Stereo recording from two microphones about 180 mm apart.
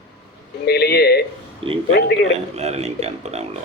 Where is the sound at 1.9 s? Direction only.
70° left (ahead or behind).